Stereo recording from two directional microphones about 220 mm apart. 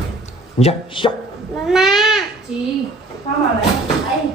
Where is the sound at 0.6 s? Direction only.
25° left (ahead or behind).